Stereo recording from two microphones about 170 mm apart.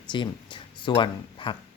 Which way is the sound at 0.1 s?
30° left (ahead or behind).